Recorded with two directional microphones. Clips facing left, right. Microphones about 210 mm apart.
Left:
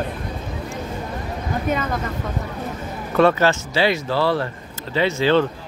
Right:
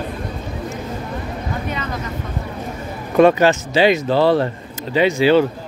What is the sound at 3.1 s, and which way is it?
Speech, 15° right (ahead or behind).